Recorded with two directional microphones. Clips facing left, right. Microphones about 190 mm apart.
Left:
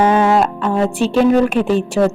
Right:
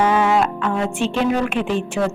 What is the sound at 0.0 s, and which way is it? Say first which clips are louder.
A woman's voice: left 4 dB; 35° left (ahead or behind).